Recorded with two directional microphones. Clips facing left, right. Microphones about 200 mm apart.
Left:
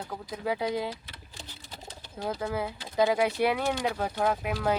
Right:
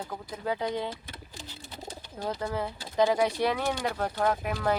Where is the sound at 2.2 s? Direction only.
5° left (ahead or behind).